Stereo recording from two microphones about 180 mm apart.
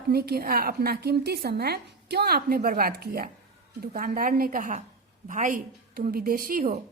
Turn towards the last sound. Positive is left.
turn(degrees=-50)  # may be behind; listen again after turning